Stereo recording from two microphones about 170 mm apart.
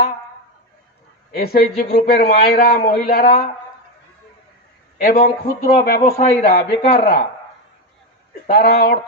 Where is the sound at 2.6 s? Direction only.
60° left (ahead or behind).